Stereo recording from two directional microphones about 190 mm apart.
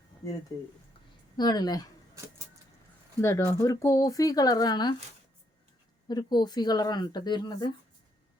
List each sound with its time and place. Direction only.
1.4 s speech: 20° left (ahead or behind)
3.2 s speech: 15° left (ahead or behind)
6.1 s speech: 20° left (ahead or behind)